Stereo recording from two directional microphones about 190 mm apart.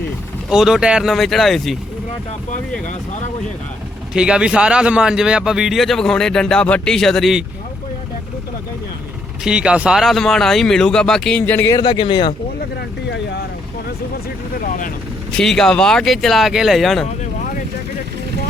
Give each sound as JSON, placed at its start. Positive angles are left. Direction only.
{"t": 0.5, "sound": "a man's voice", "side_deg": 0}
{"t": 4.1, "sound": "a man's voice", "side_deg": -5}
{"t": 9.4, "sound": "a man's voice", "side_deg": -5}
{"t": 11.8, "sound": "speech", "side_deg": 25}
{"t": 13.1, "sound": "speech", "side_deg": 65}
{"t": 15.4, "sound": "a man's voice", "side_deg": 5}